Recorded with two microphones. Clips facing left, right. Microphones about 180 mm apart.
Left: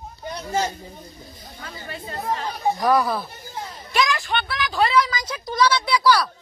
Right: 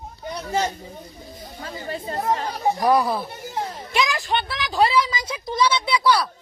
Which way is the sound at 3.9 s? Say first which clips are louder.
Left 2 dB; 25° right (ahead or behind).